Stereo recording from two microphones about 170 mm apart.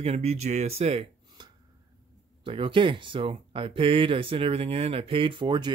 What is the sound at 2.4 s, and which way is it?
Speech, 30° right (ahead or behind).